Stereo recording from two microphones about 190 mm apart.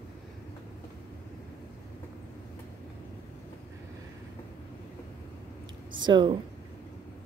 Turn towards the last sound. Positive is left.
turn(degrees=-25)  # may be behind; listen again after turning